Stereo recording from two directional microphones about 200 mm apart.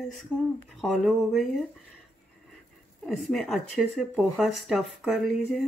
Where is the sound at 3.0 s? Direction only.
Centre (ahead or behind).